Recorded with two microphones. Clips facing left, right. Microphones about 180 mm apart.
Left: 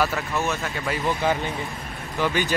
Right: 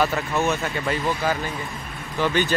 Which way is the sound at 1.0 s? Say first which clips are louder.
Left 1 dB; 20° left (ahead or behind).